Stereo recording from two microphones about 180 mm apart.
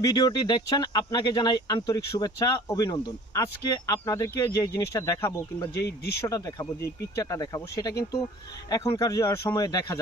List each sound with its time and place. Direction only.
0.0 s speech: 20° left (ahead or behind)
5.9 s speech: 65° left (ahead or behind)
6.2 s speech: 20° left (ahead or behind)